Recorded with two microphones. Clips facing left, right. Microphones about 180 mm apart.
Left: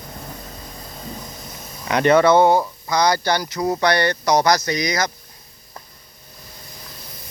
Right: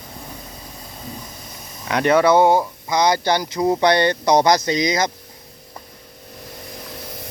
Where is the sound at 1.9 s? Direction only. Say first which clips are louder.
Left 1 dB; 5° right (ahead or behind); by 5.1 s 25° right (ahead or behind).